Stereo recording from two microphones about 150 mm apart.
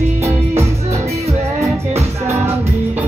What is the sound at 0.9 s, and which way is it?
Music, 45° right (ahead or behind).